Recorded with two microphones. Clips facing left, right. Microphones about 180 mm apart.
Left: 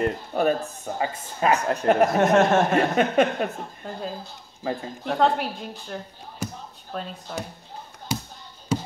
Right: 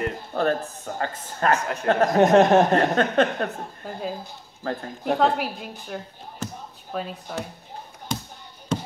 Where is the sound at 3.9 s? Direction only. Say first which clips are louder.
Right 2 dB; 5° right (ahead or behind).